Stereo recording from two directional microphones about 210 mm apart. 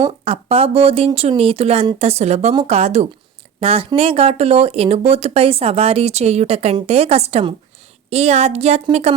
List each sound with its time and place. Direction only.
0.1 s speech: 30° right (ahead or behind)